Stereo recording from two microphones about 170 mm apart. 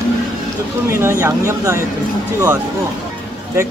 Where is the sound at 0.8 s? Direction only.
15° right (ahead or behind).